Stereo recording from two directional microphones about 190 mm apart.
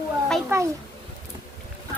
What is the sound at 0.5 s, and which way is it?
Speech, 15° right (ahead or behind).